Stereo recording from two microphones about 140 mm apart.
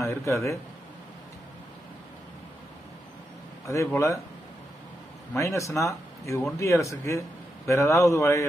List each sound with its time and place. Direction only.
0.0 s speech: 20° left (ahead or behind)
3.6 s speech: 20° left (ahead or behind)
5.3 s speech: 20° left (ahead or behind)